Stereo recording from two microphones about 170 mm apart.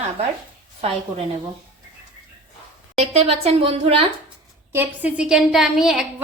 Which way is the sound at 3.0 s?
35° right (ahead or behind).